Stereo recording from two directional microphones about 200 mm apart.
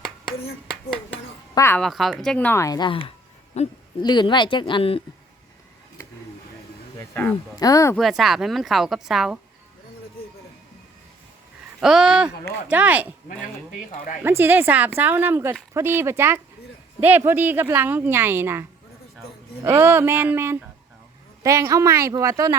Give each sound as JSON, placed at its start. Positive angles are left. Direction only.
{"t": 1.5, "sound": "speech", "side_deg": 10}
{"t": 1.8, "sound": "speech", "side_deg": 0}
{"t": 4.0, "sound": "speech", "side_deg": 20}
{"t": 7.1, "sound": "speech", "side_deg": 10}
{"t": 7.9, "sound": "speech", "side_deg": 0}
{"t": 11.8, "sound": "a woman's voice", "side_deg": 0}
{"t": 14.2, "sound": "a woman's voice", "side_deg": -10}
{"t": 19.6, "sound": "a woman's voice", "side_deg": -10}